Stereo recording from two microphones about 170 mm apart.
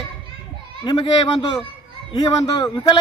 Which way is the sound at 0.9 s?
25° left (ahead or behind).